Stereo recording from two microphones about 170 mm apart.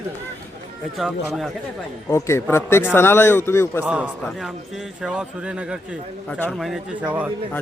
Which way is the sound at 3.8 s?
5° right (ahead or behind).